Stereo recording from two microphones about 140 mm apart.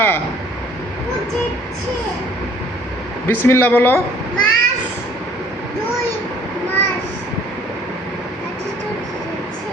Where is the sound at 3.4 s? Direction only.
15° left (ahead or behind).